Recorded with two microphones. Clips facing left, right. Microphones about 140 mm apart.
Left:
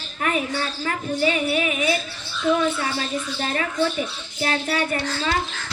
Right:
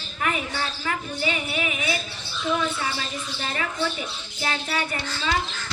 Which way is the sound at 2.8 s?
45° left (ahead or behind).